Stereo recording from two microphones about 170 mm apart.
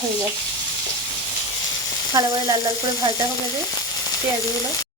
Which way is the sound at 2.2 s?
20° right (ahead or behind).